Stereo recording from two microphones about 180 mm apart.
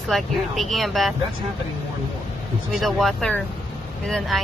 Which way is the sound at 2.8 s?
Centre (ahead or behind).